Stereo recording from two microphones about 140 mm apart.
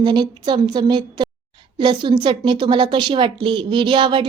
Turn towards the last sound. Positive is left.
turn(degrees=-35)  # may be behind; listen again after turning